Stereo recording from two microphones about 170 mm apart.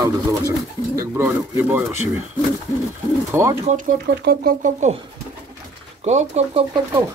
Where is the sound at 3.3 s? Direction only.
15° right (ahead or behind).